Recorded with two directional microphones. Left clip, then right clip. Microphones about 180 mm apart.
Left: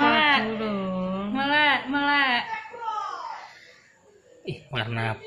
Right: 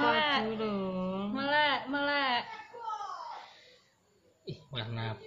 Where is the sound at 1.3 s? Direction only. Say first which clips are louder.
Left 7 dB; 65° right (ahead or behind).